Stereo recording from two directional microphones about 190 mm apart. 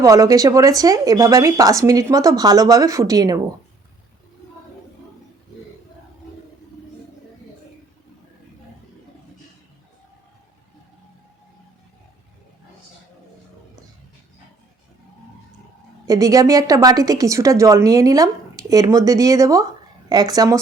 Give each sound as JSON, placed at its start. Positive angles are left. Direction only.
{"t": 0.0, "sound": "a woman's voice", "side_deg": -15}
{"t": 16.0, "sound": "a woman's voice", "side_deg": -20}